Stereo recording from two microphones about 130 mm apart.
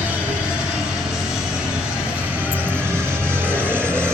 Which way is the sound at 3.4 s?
15° right (ahead or behind).